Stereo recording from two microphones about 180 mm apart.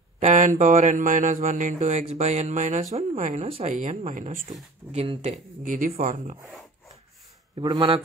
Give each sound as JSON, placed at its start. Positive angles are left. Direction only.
{"t": 0.2, "sound": "speech", "side_deg": -45}
{"t": 4.9, "sound": "speech", "side_deg": -30}
{"t": 7.5, "sound": "speech", "side_deg": -25}